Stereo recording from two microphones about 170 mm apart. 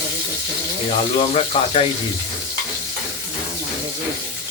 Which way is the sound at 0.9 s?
35° left (ahead or behind).